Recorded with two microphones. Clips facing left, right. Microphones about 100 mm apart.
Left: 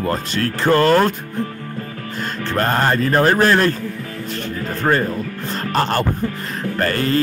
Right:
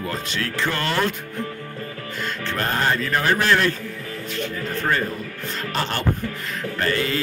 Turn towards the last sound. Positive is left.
turn(degrees=45)  # may be behind; listen again after turning